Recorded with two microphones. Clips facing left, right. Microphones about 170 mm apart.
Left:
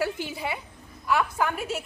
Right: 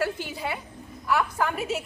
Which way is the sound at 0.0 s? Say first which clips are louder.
Even; 15° left (ahead or behind).